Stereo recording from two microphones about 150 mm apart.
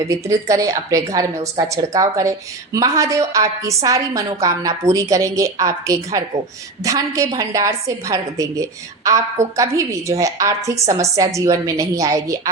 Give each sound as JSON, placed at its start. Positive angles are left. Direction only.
{"t": 0.1, "sound": "a woman's voice", "side_deg": -20}